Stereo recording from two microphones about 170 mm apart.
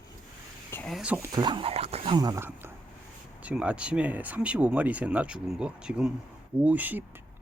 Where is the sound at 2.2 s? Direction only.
20° right (ahead or behind).